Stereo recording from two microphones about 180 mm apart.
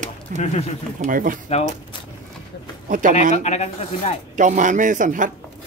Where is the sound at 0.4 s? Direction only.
40° left (ahead or behind).